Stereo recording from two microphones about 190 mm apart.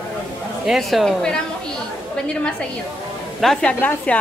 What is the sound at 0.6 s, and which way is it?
A woman's voice, centre (ahead or behind).